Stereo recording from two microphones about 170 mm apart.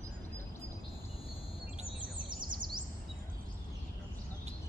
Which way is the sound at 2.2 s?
25° right (ahead or behind).